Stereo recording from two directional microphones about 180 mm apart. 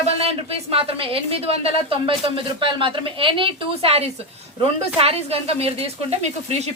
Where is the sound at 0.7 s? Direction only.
30° right (ahead or behind).